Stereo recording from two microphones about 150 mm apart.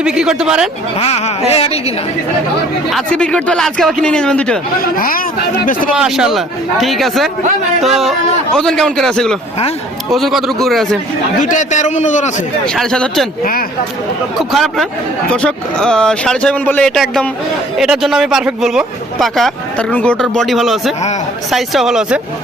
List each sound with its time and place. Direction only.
0.0 s speech: 5° right (ahead or behind)
0.9 s a man's voice: 45° left (ahead or behind)
2.9 s speech: 5° left (ahead or behind)
4.8 s speech: 75° left (ahead or behind)
6.0 s speech: 5° right (ahead or behind)
8.5 s speech: 5° left (ahead or behind)
11.4 s a man's voice: 55° left (ahead or behind)
12.6 s speech: 5° left (ahead or behind)
13.4 s speech: 75° left (ahead or behind)
14.5 s speech: centre (ahead or behind)